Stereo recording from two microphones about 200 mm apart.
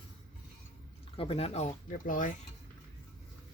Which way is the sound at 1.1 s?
30° left (ahead or behind).